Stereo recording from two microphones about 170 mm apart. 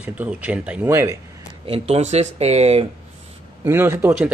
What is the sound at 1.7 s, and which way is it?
Speech, 35° right (ahead or behind).